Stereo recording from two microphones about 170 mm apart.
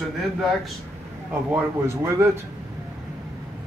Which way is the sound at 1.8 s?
15° right (ahead or behind).